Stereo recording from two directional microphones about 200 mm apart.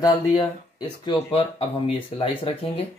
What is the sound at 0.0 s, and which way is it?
Speech, 20° left (ahead or behind).